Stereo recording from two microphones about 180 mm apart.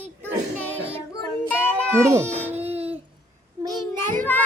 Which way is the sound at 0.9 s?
10° left (ahead or behind).